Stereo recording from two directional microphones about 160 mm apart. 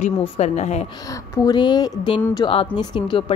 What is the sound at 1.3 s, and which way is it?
A woman's voice, 25° left (ahead or behind).